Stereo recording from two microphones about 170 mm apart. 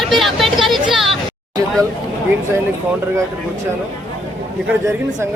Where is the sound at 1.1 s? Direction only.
20° right (ahead or behind).